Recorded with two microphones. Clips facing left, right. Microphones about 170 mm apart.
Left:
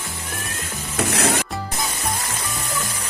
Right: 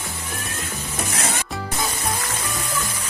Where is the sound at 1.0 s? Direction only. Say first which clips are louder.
Left 7 dB; 65° left (ahead or behind).